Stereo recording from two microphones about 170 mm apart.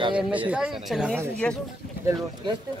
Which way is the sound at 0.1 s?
5° right (ahead or behind).